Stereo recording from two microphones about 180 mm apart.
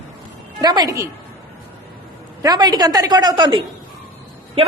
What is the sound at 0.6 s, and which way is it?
Speech, 20° right (ahead or behind).